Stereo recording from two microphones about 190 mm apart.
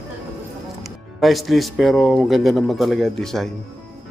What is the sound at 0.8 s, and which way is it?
Speech, centre (ahead or behind).